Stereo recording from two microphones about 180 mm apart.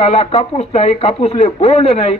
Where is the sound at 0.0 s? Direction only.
35° left (ahead or behind).